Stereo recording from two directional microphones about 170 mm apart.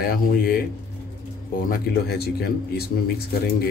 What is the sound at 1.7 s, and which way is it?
Speech, 70° left (ahead or behind).